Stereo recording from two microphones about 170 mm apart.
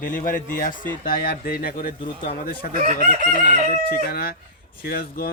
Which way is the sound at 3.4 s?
65° left (ahead or behind).